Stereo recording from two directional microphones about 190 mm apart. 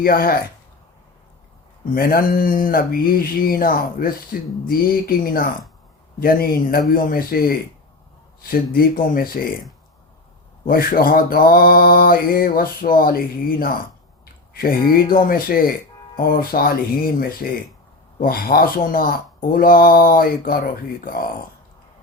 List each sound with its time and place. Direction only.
0.0 s mantra: 50° left (ahead or behind)
1.9 s mantra: 50° left (ahead or behind)
10.7 s mantra: 50° left (ahead or behind)